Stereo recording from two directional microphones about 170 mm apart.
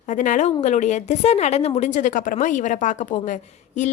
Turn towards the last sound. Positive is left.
turn(degrees=45)  # may be behind; listen again after turning